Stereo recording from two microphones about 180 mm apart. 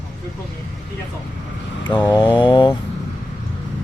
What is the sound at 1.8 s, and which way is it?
Mantra, 25° left (ahead or behind).